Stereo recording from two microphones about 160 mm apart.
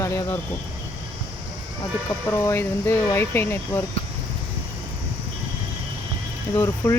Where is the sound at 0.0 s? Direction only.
20° left (ahead or behind).